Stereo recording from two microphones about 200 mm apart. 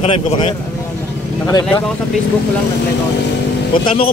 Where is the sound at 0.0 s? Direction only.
30° left (ahead or behind).